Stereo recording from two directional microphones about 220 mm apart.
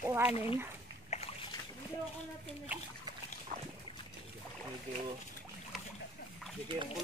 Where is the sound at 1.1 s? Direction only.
30° left (ahead or behind).